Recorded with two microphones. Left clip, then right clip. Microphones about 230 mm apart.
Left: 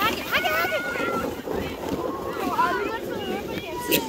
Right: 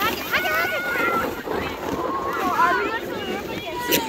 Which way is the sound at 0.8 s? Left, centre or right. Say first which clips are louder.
Right 4 dB; centre.